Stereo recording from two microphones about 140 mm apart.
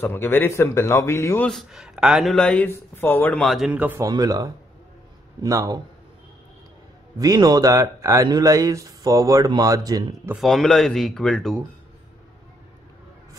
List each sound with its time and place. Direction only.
0.0 s a man's voice: 15° left (ahead or behind)
1.5 s speech: centre (ahead or behind)
2.6 s speech: 15° left (ahead or behind); by 4.0 s 10° right (ahead or behind)
4.0 s speech: 30° right (ahead or behind)
7.2 s speech: 30° right (ahead or behind)
10.3 s speech: centre (ahead or behind)